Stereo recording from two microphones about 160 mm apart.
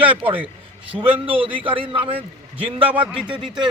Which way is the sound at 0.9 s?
20° right (ahead or behind).